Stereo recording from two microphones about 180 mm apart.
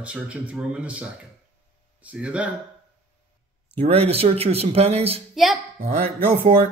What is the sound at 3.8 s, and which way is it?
Speech, 35° right (ahead or behind).